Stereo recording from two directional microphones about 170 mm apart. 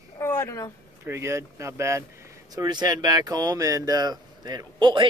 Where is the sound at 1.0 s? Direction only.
15° right (ahead or behind).